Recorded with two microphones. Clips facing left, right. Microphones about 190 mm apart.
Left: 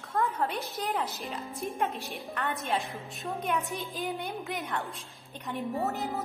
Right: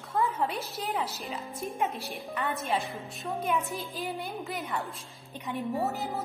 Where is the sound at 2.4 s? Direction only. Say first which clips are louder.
Right 1 dB; centre (ahead or behind).